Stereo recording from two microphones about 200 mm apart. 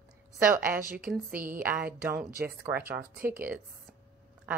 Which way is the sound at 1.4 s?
45° right (ahead or behind).